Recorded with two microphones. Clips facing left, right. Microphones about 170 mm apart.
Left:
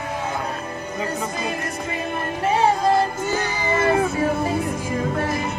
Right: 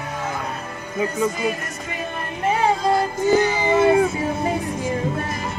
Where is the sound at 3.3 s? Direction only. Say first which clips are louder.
Right 6 dB; 20° right (ahead or behind).